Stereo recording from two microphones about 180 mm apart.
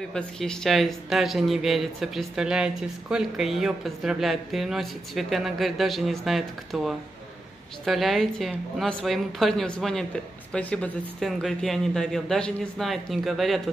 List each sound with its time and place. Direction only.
0.1 s speech: 5° left (ahead or behind)